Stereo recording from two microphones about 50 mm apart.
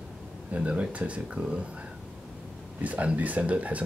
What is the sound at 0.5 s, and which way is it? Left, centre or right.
Speech, right.